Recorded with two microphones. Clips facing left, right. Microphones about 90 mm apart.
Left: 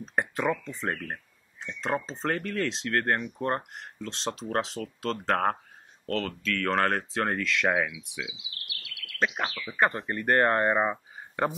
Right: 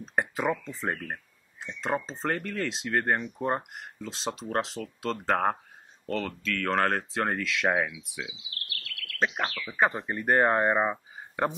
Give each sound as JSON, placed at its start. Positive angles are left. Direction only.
{"t": 0.0, "sound": "speech", "side_deg": 0}
{"t": 8.4, "sound": "bird vocalization", "side_deg": 15}
{"t": 9.4, "sound": "speech", "side_deg": 10}
{"t": 9.8, "sound": "speech", "side_deg": -5}